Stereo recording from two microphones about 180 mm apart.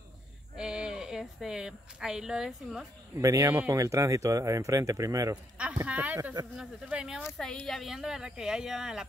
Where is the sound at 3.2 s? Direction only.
15° right (ahead or behind).